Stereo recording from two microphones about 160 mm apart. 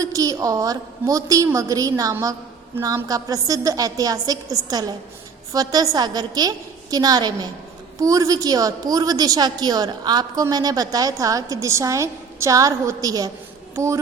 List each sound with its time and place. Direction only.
0.0 s a woman's voice: 20° right (ahead or behind)